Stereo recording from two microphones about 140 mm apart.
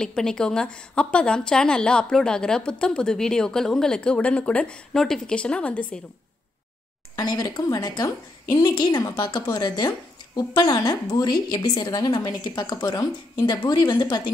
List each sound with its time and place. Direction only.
0.0 s a woman's voice: 5° left (ahead or behind)
7.2 s a woman's voice: 25° left (ahead or behind)